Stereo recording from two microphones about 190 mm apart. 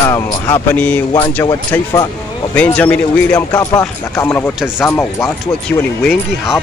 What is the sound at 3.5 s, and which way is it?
Speech, 20° left (ahead or behind).